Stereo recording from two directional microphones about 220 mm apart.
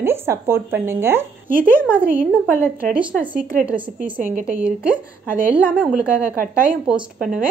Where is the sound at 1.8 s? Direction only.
5° right (ahead or behind).